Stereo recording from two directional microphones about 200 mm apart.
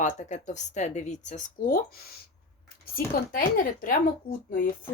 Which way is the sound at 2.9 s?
45° left (ahead or behind).